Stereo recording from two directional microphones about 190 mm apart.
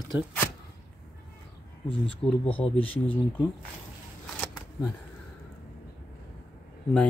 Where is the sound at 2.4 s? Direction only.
30° left (ahead or behind).